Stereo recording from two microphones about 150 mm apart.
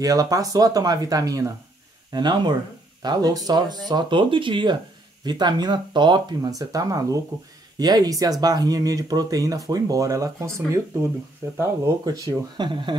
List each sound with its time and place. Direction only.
0.0 s speech: 25° right (ahead or behind)